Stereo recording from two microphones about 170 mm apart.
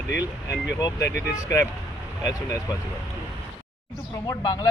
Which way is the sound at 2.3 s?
20° left (ahead or behind).